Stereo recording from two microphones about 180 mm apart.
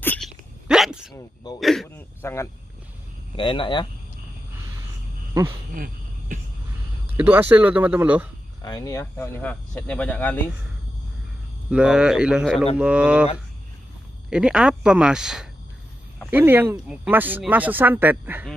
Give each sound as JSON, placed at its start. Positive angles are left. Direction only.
{"t": 0.0, "sound": "hiccup", "side_deg": 10}
{"t": 0.7, "sound": "a sound", "side_deg": -5}
{"t": 1.1, "sound": "speech", "side_deg": 20}
{"t": 1.6, "sound": "a sound", "side_deg": 0}
{"t": 2.0, "sound": "cricket", "side_deg": 15}
{"t": 3.3, "sound": "speech", "side_deg": 30}
{"t": 5.8, "sound": "a sound", "side_deg": -50}
{"t": 7.2, "sound": "speech", "side_deg": -10}
{"t": 8.6, "sound": "speech", "side_deg": 20}
{"t": 9.0, "sound": "speech", "side_deg": 10}
{"t": 11.7, "sound": "speech", "side_deg": -5}
{"t": 14.3, "sound": "speech", "side_deg": -5}